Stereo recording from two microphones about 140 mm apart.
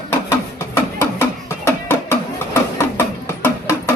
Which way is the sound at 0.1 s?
20° left (ahead or behind).